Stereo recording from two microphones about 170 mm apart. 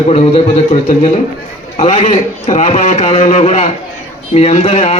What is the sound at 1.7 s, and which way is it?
A man's voice, 40° left (ahead or behind).